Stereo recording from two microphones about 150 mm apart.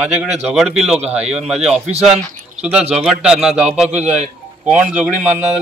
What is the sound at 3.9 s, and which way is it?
Speech, 50° right (ahead or behind).